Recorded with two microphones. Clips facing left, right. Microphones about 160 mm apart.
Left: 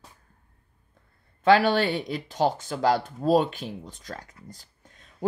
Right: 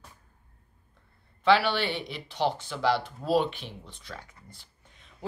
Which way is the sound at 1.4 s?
45° left (ahead or behind).